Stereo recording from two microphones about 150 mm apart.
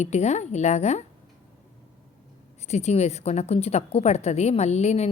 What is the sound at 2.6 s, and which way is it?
A woman's voice, 45° left (ahead or behind).